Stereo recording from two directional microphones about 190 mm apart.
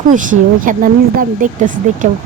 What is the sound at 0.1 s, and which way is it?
A woman's voice, 45° right (ahead or behind).